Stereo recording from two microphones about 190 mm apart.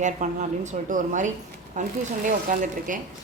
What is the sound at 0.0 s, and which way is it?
A woman's voice, 40° right (ahead or behind).